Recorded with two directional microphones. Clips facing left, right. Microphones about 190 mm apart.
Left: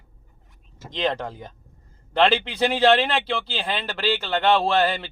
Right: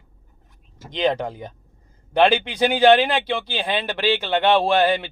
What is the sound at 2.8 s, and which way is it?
Speech, 10° right (ahead or behind).